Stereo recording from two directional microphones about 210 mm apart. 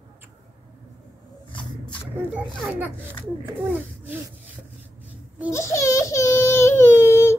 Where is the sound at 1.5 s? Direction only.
5° left (ahead or behind).